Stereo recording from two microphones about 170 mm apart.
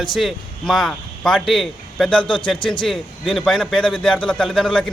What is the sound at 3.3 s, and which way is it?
A man's voice, 5° left (ahead or behind).